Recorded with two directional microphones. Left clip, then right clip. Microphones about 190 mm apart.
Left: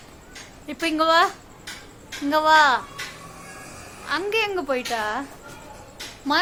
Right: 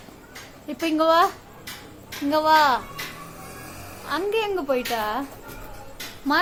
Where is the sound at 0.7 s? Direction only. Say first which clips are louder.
Even; 10° left (ahead or behind).